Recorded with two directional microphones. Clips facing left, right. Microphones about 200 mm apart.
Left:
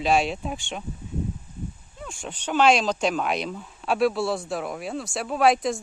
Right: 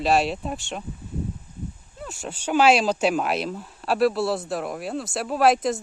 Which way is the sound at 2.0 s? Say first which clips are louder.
Right 2 dB; 5° right (ahead or behind).